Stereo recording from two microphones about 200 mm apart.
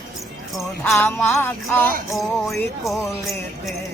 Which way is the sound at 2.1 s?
Centre (ahead or behind).